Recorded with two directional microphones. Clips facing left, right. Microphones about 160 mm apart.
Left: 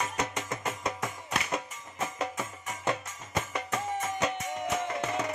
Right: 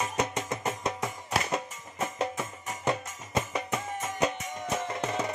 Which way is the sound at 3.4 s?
15° right (ahead or behind).